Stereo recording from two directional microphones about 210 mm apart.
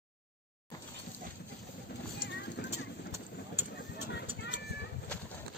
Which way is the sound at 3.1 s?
10° right (ahead or behind).